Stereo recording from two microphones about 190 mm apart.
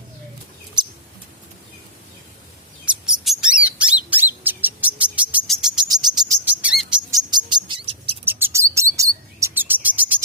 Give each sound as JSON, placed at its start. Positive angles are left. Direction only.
{"t": 2.8, "sound": "bird", "side_deg": -5}
{"t": 5.9, "sound": "bird", "side_deg": -20}
{"t": 6.4, "sound": "bird", "side_deg": -5}
{"t": 7.1, "sound": "music", "side_deg": -20}
{"t": 8.2, "sound": "chirp", "side_deg": -10}